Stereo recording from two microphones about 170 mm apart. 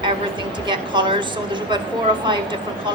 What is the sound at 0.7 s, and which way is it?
Speech, 30° right (ahead or behind).